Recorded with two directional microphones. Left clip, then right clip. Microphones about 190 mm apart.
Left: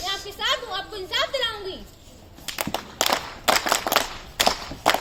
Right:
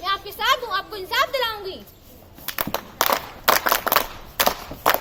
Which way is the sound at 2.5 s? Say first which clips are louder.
Right 1 dB; 10° right (ahead or behind).